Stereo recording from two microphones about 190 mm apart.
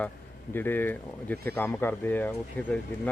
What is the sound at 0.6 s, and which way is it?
A man's voice, 10° left (ahead or behind).